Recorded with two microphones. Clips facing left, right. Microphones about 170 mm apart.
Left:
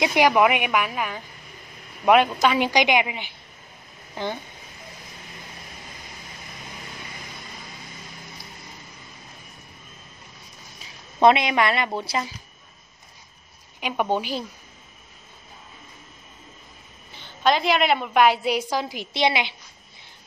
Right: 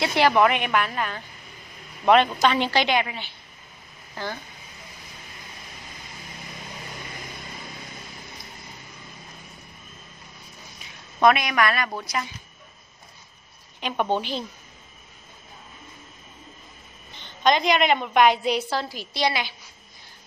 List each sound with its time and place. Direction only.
0.0 s a woman's voice: 15° left (ahead or behind)
11.1 s a woman's voice: 25° left (ahead or behind)
13.7 s a woman's voice: 10° left (ahead or behind)
17.1 s a woman's voice: 5° left (ahead or behind); by 19.5 s 20° left (ahead or behind)